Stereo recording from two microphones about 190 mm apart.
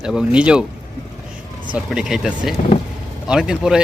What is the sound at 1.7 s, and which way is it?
Speech, 5° right (ahead or behind).